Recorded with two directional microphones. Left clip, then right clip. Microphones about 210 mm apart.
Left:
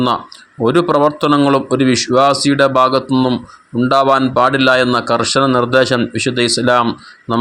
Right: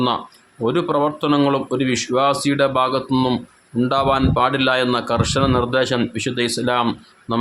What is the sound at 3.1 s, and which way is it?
A man's voice, 10° left (ahead or behind).